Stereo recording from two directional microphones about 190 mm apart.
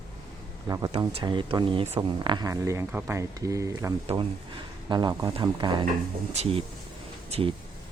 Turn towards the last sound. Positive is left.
turn(degrees=-30)  # may be behind; listen again after turning